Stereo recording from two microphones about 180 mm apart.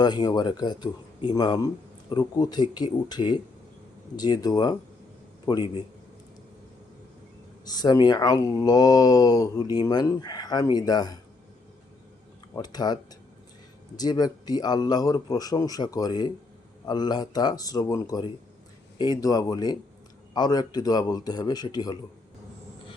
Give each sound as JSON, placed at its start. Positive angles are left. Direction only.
{"t": 0.0, "sound": "speech", "side_deg": 25}
{"t": 7.6, "sound": "speech", "side_deg": 20}
{"t": 12.5, "sound": "speech", "side_deg": 20}